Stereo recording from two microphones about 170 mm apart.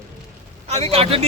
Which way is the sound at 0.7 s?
40° right (ahead or behind).